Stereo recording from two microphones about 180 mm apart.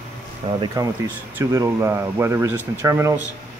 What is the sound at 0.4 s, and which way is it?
Speech, 35° right (ahead or behind).